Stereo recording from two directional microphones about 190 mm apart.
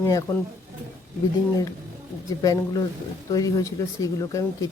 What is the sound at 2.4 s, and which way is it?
Speech, 20° left (ahead or behind).